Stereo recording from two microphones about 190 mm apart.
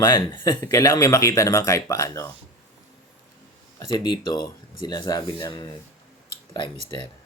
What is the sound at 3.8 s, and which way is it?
Speech, 20° left (ahead or behind).